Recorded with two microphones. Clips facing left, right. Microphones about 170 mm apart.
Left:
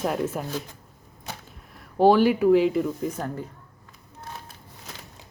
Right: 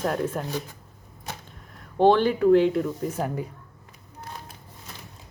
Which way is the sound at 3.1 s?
10° right (ahead or behind).